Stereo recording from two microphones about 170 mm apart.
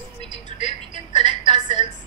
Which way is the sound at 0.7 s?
25° right (ahead or behind).